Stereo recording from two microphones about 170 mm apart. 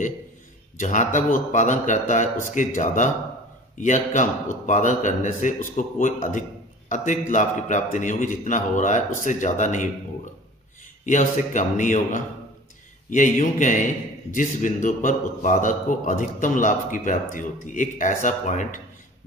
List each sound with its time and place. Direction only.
0.7 s a man's voice: 45° left (ahead or behind)
11.1 s a man's voice: 45° left (ahead or behind)